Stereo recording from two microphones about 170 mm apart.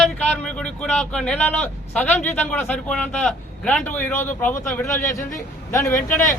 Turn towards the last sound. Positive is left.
turn(degrees=15)  # may be behind; listen again after turning